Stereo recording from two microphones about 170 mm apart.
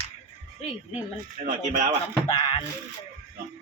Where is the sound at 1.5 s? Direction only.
45° right (ahead or behind).